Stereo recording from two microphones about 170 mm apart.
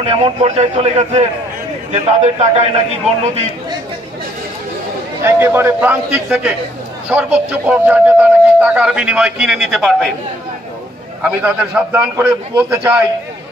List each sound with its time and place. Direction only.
0.0 s a man's voice: 35° right (ahead or behind)
5.2 s speech: 15° right (ahead or behind)
11.2 s speech: 5° right (ahead or behind)